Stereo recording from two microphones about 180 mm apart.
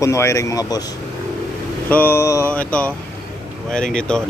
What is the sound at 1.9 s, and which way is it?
Speech, 10° left (ahead or behind).